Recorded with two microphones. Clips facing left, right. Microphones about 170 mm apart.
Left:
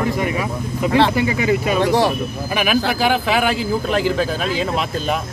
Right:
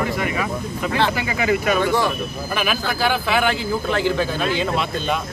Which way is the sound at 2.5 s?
10° left (ahead or behind).